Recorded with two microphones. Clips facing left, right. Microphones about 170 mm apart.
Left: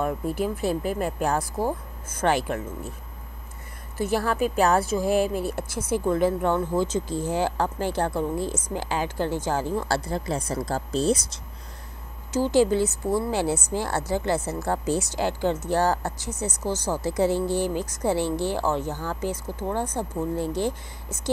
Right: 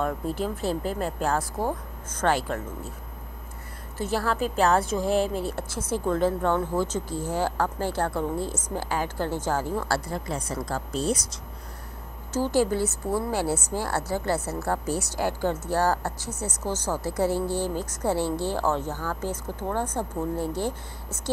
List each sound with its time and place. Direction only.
0.0 s a woman's voice: 10° left (ahead or behind)
4.0 s a woman's voice: 15° left (ahead or behind)
12.4 s a woman's voice: 20° left (ahead or behind)